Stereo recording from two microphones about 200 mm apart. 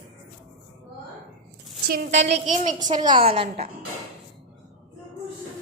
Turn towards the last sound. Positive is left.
turn(degrees=-30)  # may be behind; listen again after turning